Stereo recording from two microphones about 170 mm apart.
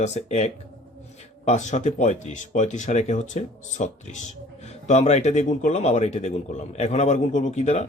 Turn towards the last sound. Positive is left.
turn(degrees=40)  # may be behind; listen again after turning